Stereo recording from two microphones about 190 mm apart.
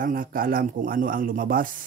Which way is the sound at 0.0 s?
45° right (ahead or behind).